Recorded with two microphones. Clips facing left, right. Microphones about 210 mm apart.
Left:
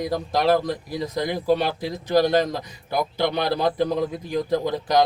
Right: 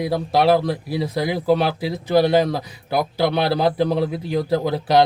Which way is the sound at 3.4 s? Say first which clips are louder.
Right 3 dB; 75° right (ahead or behind).